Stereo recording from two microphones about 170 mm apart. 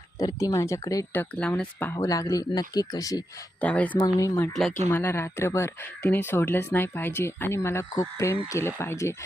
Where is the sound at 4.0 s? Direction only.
20° left (ahead or behind).